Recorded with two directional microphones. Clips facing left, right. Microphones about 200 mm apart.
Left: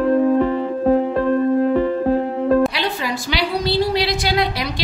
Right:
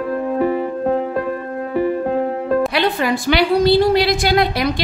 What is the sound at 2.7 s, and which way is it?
A woman's voice, 55° right (ahead or behind).